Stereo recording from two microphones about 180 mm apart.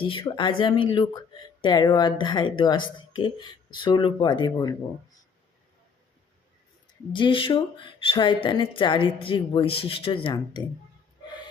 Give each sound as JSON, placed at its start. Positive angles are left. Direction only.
{"t": 0.0, "sound": "speech", "side_deg": 30}
{"t": 7.1, "sound": "speech", "side_deg": 30}